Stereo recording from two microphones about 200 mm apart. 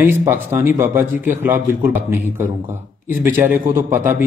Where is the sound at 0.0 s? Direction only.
10° right (ahead or behind).